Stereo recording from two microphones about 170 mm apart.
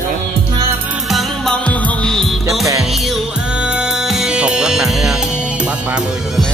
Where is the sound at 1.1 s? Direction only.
Centre (ahead or behind).